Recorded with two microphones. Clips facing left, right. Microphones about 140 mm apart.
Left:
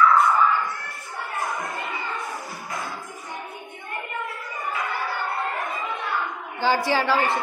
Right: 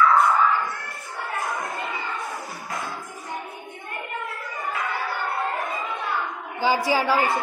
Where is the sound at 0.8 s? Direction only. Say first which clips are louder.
Right 1 dB; 20° left (ahead or behind).